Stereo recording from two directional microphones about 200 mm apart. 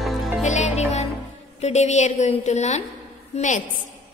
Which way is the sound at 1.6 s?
35° left (ahead or behind).